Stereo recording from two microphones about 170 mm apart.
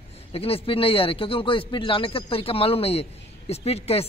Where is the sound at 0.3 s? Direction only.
35° left (ahead or behind).